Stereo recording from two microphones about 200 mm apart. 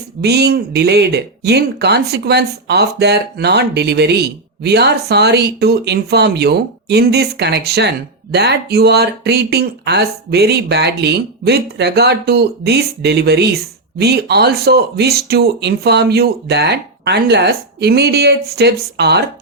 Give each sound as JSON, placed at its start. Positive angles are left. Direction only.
{"t": 0.2, "sound": "speech", "side_deg": -55}